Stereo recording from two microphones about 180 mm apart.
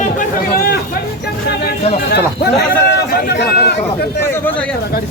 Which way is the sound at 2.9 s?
65° left (ahead or behind).